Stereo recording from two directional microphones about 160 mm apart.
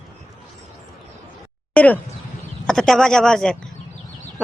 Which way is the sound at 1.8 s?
10° left (ahead or behind).